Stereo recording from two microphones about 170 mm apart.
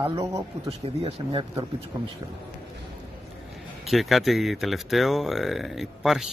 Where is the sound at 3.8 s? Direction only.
Centre (ahead or behind).